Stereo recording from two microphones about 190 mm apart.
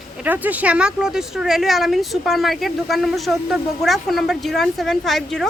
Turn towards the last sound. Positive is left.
turn(degrees=0)  # may be behind; listen again after turning